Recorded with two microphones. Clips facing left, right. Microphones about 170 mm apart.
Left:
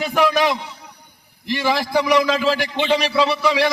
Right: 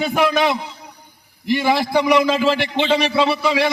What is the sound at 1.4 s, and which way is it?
A man's voice, 15° right (ahead or behind).